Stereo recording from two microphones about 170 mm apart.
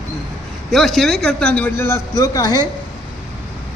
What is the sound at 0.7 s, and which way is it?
A man's voice, centre (ahead or behind).